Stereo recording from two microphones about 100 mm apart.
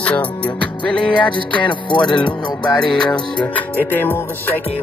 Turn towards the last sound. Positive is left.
turn(degrees=20)  # may be behind; listen again after turning